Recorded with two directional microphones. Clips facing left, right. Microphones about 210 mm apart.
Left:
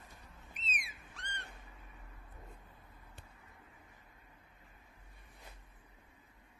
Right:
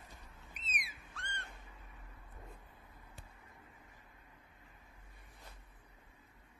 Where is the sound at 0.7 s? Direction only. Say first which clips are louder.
Left 1 dB; 25° left (ahead or behind).